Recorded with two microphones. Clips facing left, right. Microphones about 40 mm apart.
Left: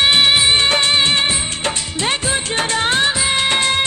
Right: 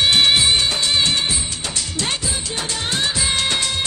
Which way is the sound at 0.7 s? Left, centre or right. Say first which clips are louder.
Left 4 dB; left.